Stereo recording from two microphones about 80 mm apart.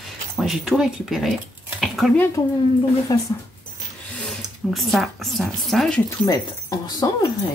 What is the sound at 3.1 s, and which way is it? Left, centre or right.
Speech, left.